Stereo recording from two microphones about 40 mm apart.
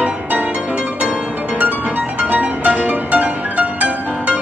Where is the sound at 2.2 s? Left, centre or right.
Right.